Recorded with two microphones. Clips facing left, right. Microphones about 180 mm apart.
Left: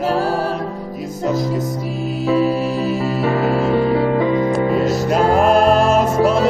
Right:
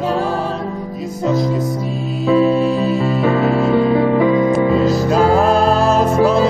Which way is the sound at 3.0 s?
35° left (ahead or behind).